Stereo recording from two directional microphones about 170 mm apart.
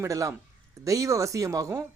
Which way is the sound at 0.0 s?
20° right (ahead or behind).